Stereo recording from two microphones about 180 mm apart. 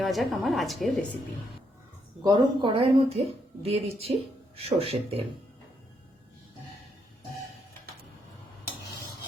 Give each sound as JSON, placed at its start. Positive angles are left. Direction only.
{"t": 0.0, "sound": "a woman's voice", "side_deg": 0}
{"t": 2.2, "sound": "speech", "side_deg": -25}